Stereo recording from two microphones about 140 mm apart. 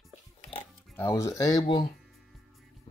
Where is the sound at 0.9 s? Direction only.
20° left (ahead or behind).